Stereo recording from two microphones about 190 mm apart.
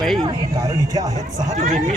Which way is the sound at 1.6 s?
40° right (ahead or behind).